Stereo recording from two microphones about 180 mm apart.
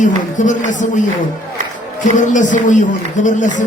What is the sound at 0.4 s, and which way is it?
Speech, 45° left (ahead or behind).